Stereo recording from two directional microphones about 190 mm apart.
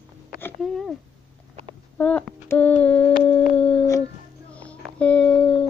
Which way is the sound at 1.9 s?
5° left (ahead or behind).